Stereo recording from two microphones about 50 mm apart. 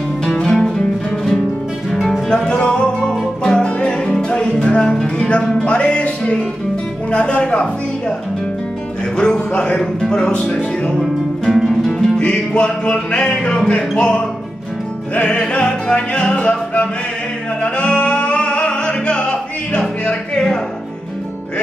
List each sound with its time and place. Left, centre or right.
0.4 s music: centre
2.2 s music: centre
3.0 s music: centre
3.5 s music: centre
9.1 s music: centre
11.0 s music: centre
12.2 s music: centre